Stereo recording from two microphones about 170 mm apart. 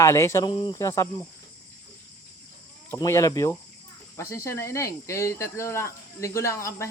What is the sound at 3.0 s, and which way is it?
Speech, 20° left (ahead or behind).